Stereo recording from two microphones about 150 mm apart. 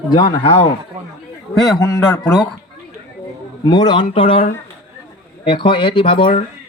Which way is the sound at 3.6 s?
30° left (ahead or behind).